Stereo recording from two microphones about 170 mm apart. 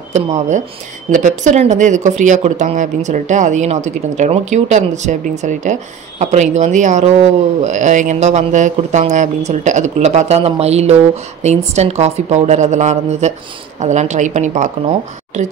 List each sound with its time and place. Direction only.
0.1 s a woman's voice: 45° right (ahead or behind)